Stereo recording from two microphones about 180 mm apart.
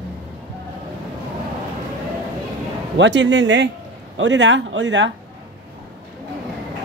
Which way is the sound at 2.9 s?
85° right.